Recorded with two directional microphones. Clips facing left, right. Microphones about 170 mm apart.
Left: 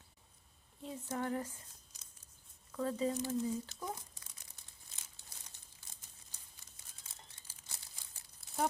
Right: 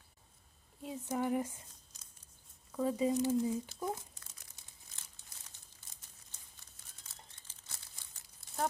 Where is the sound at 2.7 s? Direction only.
10° right (ahead or behind).